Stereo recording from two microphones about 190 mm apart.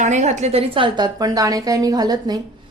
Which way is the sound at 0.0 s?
40° right (ahead or behind).